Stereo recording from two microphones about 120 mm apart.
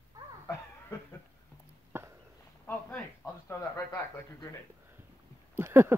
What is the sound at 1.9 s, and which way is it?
Walk, 20° right (ahead or behind).